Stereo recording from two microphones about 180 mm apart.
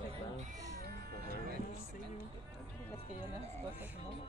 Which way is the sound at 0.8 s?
60° right (ahead or behind).